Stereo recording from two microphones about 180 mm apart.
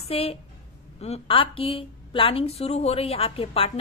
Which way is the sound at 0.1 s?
35° left (ahead or behind).